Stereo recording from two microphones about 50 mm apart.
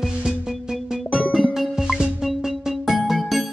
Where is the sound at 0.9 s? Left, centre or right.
Right.